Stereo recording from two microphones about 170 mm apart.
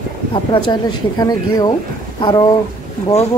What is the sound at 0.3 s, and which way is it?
Speech, 30° left (ahead or behind).